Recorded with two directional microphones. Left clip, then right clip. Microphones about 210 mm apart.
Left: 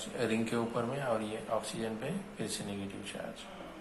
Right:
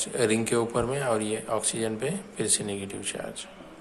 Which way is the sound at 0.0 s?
50° right (ahead or behind).